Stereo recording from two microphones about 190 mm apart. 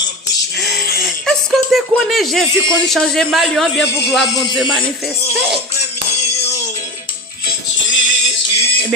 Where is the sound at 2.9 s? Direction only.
Centre (ahead or behind).